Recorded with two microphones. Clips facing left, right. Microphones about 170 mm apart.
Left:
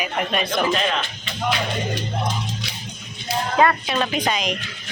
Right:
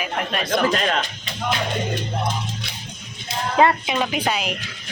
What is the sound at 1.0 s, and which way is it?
Music, 40° right (ahead or behind).